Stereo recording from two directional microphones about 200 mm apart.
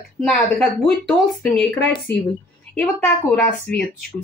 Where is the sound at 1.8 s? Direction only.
60° left (ahead or behind).